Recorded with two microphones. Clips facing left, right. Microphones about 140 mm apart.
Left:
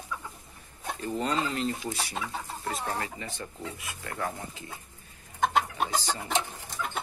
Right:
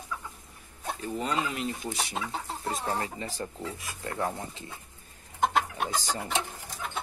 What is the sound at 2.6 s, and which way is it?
Chicken, 30° right (ahead or behind).